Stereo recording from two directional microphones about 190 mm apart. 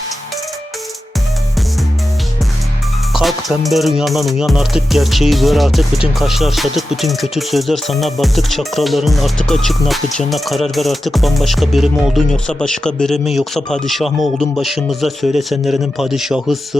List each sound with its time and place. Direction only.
3.1 s music: centre (ahead or behind)